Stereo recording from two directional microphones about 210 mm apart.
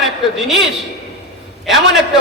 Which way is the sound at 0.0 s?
Centre (ahead or behind).